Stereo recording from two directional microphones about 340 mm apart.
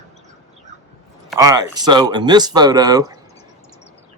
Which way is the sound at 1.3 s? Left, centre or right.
Centre.